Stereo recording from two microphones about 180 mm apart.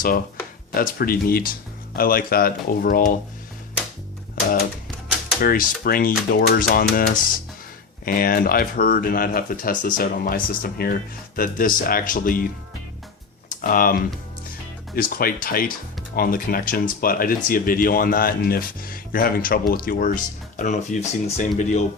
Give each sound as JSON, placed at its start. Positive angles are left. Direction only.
{"t": 0.7, "sound": "speech", "side_deg": 55}
{"t": 5.4, "sound": "speech", "side_deg": 55}
{"t": 13.5, "sound": "typing", "side_deg": 50}
{"t": 14.9, "sound": "speech", "side_deg": 55}